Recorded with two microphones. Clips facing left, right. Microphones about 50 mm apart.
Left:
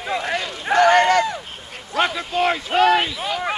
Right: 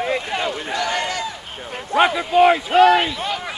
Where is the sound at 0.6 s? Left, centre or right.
Left.